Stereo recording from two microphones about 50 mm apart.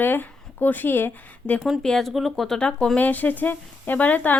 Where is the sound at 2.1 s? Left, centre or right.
Centre.